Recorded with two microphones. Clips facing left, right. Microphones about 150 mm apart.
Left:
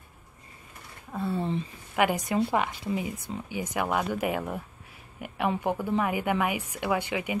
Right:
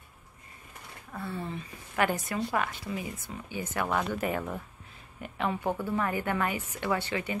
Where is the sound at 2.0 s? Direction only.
15° left (ahead or behind).